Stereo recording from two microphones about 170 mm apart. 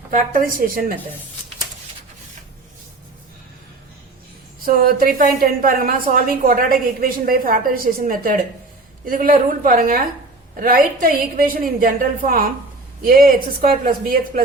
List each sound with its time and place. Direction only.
0.1 s a woman's voice: 55° right (ahead or behind)
4.6 s a woman's voice: 55° right (ahead or behind)